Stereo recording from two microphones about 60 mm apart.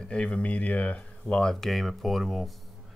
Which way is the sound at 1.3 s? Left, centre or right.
Centre.